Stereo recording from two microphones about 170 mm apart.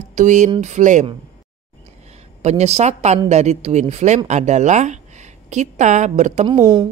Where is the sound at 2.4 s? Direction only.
40° right (ahead or behind).